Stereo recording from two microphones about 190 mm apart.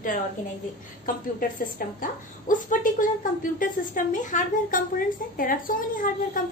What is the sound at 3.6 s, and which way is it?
A woman's voice, 45° left (ahead or behind).